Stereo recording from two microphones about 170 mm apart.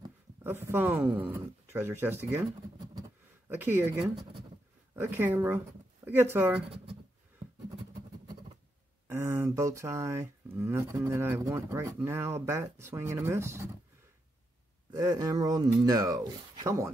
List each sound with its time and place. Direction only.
0.4 s speech: 15° right (ahead or behind)
2.9 s a sound: 20° right (ahead or behind)
3.5 s speech: 10° right (ahead or behind)
9.0 s speech: 15° right (ahead or behind)
14.9 s speech: 25° right (ahead or behind)